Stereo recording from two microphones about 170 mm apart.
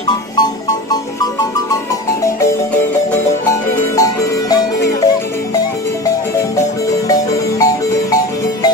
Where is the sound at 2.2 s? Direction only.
20° left (ahead or behind).